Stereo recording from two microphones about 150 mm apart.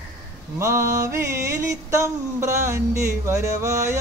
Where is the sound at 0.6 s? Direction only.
20° right (ahead or behind).